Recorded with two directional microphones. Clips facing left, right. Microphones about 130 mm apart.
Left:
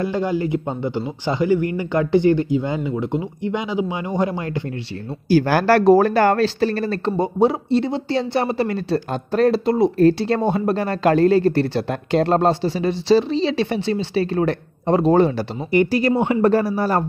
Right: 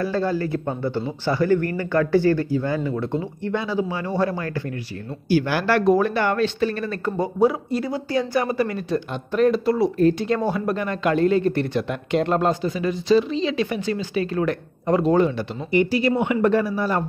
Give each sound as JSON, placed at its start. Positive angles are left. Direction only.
{"t": 0.0, "sound": "a man's voice", "side_deg": 15}
{"t": 5.3, "sound": "speech", "side_deg": 40}
{"t": 7.1, "sound": "speech", "side_deg": 25}
{"t": 15.7, "sound": "speech", "side_deg": 50}
{"t": 16.2, "sound": "speech", "side_deg": 30}